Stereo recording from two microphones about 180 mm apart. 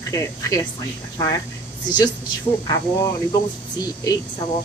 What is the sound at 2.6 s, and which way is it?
Speech, 20° left (ahead or behind).